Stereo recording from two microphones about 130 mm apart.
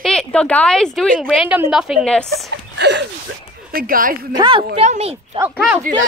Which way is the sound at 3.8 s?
90° right.